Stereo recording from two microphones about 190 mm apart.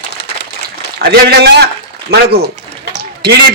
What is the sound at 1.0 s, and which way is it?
A man's voice, 55° right (ahead or behind).